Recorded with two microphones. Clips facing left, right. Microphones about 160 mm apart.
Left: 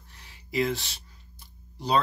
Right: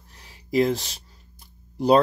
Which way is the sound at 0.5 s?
40° right (ahead or behind).